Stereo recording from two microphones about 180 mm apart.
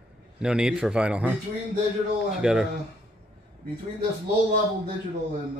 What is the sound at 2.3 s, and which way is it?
Speech, 5° right (ahead or behind).